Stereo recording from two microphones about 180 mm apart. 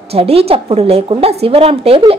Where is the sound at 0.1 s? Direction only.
35° right (ahead or behind).